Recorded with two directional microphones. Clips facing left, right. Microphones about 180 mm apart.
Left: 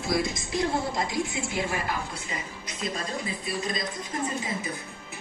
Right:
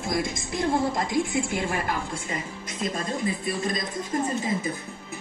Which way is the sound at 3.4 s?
50° right (ahead or behind).